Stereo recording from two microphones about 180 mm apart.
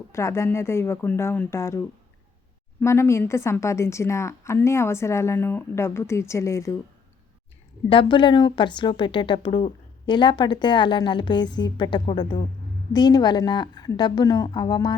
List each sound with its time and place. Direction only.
0.1 s a woman's voice: 15° left (ahead or behind)
2.8 s a woman's voice: 15° left (ahead or behind)
7.9 s a woman's voice: 25° left (ahead or behind)